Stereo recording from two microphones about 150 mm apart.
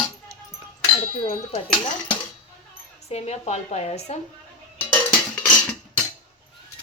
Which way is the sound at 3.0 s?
45° left (ahead or behind).